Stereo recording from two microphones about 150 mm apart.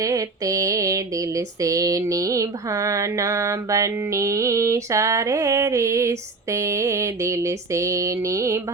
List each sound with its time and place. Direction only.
0.0 s mantra: 20° right (ahead or behind)